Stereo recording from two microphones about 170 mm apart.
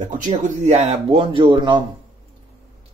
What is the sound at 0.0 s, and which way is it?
Speech, 50° right (ahead or behind).